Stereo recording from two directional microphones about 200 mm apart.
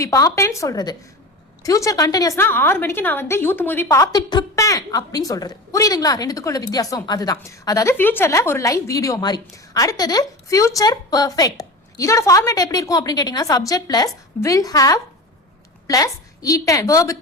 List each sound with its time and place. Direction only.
0.0 s a woman's voice: 15° left (ahead or behind)